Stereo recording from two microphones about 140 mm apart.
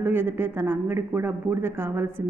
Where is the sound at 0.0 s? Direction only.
15° right (ahead or behind).